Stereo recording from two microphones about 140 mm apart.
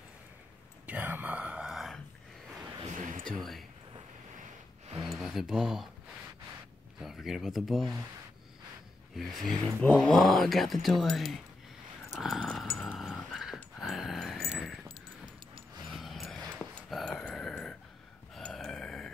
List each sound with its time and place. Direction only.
0.8 s whispering: 10° right (ahead or behind)
3.0 s a sound: 70° right (ahead or behind)
5.0 s a sound: centre (ahead or behind)
7.0 s speech: centre (ahead or behind)
9.5 s speech: 5° left (ahead or behind)
12.1 s dog: centre (ahead or behind)
13.7 s a sound: centre (ahead or behind)
16.0 s music: centre (ahead or behind)
16.5 s dog: 5° left (ahead or behind)
18.3 s burping: 5° left (ahead or behind)